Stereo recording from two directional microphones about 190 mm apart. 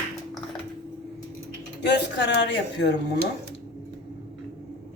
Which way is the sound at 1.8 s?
65° left (ahead or behind).